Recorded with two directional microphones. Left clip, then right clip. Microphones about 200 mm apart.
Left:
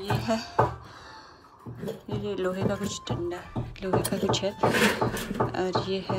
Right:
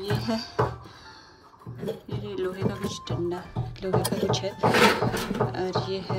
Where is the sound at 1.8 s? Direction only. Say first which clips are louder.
Left 1 dB; 10° right (ahead or behind).